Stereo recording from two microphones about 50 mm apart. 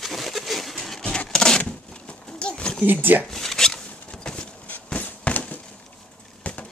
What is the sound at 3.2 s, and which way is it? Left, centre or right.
Zipper, centre.